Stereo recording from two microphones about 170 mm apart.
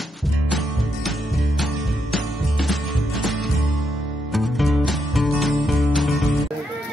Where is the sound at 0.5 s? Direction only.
Centre (ahead or behind).